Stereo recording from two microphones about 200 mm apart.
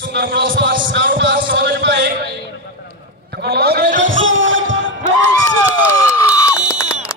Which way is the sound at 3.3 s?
50° right (ahead or behind).